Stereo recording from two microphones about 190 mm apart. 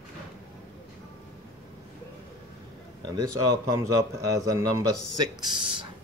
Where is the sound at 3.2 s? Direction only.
15° right (ahead or behind).